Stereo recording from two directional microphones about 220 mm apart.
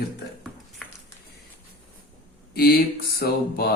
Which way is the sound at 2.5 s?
45° left (ahead or behind).